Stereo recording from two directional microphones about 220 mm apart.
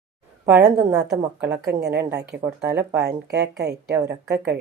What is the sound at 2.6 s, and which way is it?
Speech, 50° right (ahead or behind).